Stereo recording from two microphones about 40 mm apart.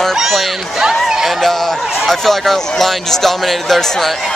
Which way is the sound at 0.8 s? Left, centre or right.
Centre.